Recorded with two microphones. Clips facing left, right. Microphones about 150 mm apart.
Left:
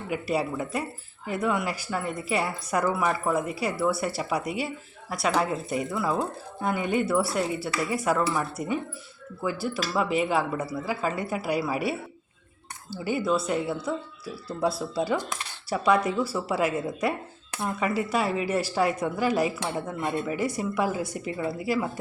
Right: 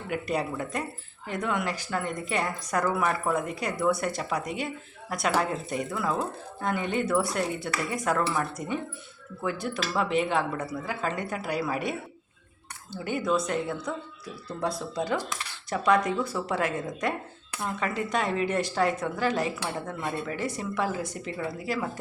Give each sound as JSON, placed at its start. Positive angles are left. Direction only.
{"t": 0.1, "sound": "speech", "side_deg": 5}